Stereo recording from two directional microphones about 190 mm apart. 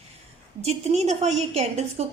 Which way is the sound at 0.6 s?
35° right (ahead or behind).